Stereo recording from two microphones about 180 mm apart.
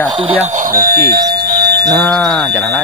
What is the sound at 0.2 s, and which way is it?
Speech, 35° right (ahead or behind).